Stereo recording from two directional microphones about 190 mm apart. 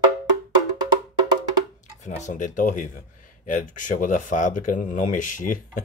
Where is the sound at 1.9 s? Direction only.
40° left (ahead or behind).